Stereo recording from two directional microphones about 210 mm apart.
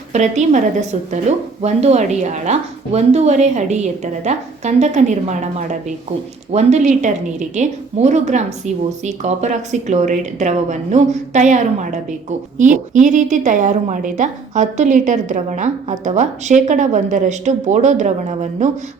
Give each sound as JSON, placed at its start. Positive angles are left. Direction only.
{"t": 0.1, "sound": "a woman's voice", "side_deg": -35}